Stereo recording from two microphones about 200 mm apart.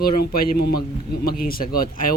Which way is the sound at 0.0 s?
50° left (ahead or behind).